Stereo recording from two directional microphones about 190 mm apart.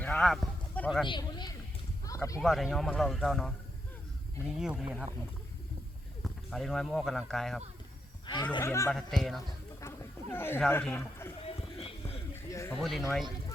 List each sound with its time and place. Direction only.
0.0 s horse: 5° left (ahead or behind)
1.0 s a man's voice: 25° left (ahead or behind)
2.1 s a sound: 20° left (ahead or behind)
2.4 s speech: centre (ahead or behind)
4.5 s speech: 5° right (ahead or behind)
6.2 s speech: centre (ahead or behind)
8.5 s speech: 15° left (ahead or behind)
8.9 s speech: centre (ahead or behind)
10.3 s speech: 10° left (ahead or behind)
11.4 s a sound: 30° left (ahead or behind)
12.3 s a sound: 15° left (ahead or behind)
12.8 s speech: centre (ahead or behind)